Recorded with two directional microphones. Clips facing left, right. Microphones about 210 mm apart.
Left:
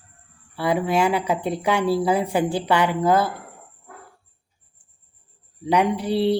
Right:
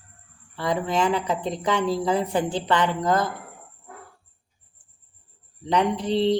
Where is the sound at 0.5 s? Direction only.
10° left (ahead or behind).